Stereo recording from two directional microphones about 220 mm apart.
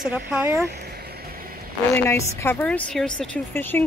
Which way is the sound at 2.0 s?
10° left (ahead or behind).